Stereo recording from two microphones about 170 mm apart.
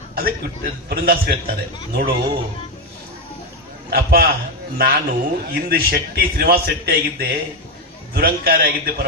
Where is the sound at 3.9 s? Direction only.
60° right (ahead or behind).